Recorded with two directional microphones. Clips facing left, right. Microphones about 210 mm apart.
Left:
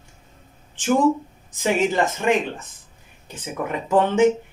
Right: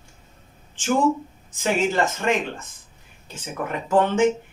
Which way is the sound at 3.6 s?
15° left (ahead or behind).